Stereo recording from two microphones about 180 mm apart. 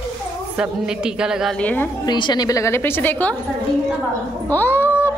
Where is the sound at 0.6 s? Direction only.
5° right (ahead or behind).